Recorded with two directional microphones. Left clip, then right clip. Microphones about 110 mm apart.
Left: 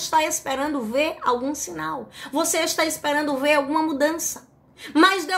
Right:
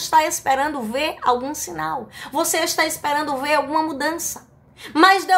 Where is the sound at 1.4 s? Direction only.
35° right (ahead or behind).